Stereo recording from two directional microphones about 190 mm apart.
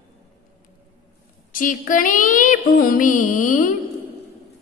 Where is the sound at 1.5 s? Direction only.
45° left (ahead or behind).